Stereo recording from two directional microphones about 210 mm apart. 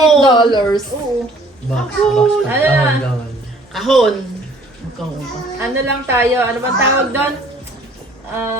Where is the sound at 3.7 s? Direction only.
Centre (ahead or behind).